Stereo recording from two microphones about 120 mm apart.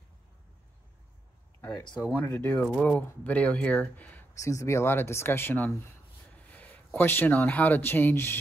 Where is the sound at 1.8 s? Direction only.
40° left (ahead or behind).